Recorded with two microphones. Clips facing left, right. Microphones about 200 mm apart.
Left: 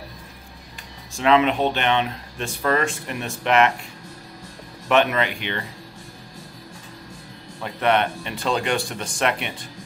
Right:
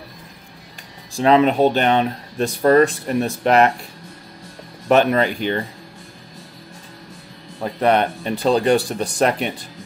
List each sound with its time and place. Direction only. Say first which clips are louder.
1.1 s speech: right 4 dB; 40° right (ahead or behind)
4.8 s speech: right 4 dB; 40° right (ahead or behind)
7.6 s speech: right 4 dB; 35° right (ahead or behind)